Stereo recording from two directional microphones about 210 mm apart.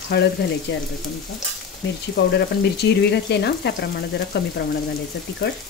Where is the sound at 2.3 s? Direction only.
50° left (ahead or behind).